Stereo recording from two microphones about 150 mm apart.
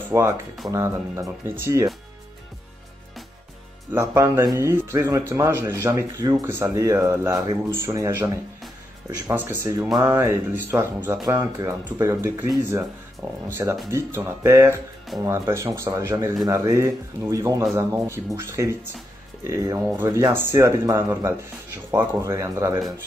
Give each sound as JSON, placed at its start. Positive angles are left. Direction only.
{"t": 0.1, "sound": "speech", "side_deg": -20}
{"t": 4.0, "sound": "speech", "side_deg": -20}
{"t": 9.3, "sound": "speech", "side_deg": -10}
{"t": 13.5, "sound": "speech", "side_deg": -15}